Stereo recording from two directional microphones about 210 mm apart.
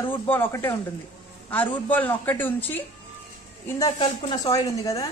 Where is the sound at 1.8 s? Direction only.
10° left (ahead or behind).